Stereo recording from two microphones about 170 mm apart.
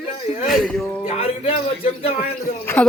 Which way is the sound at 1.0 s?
35° left (ahead or behind).